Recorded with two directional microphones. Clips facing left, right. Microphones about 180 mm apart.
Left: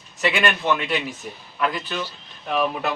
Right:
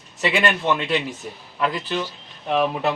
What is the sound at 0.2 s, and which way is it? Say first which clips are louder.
A man's voice: right 1 dB; 25° right (ahead or behind).